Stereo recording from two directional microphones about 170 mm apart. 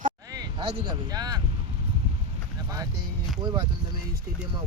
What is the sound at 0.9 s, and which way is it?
Speech, 25° right (ahead or behind).